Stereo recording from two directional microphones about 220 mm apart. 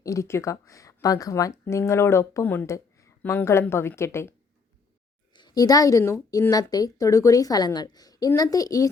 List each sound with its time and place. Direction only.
0.0 s a woman's voice: 15° left (ahead or behind)